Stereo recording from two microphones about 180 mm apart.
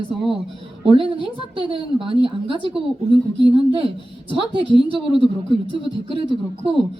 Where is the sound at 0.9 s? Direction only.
30° right (ahead or behind).